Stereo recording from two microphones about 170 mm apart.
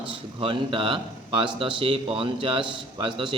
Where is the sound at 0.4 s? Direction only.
30° right (ahead or behind).